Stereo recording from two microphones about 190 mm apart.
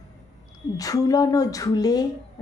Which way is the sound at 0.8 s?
20° left (ahead or behind).